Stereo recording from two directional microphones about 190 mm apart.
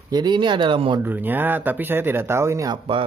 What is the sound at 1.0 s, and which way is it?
Speech, 10° right (ahead or behind).